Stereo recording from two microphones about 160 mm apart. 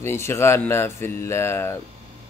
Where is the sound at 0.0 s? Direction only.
15° left (ahead or behind).